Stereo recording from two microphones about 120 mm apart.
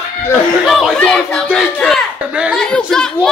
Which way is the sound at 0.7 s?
Centre (ahead or behind).